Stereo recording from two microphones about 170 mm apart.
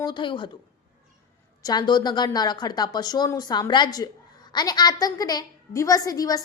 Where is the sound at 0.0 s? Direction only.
25° left (ahead or behind).